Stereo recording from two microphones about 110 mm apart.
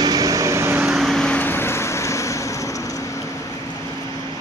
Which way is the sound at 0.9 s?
Centre (ahead or behind).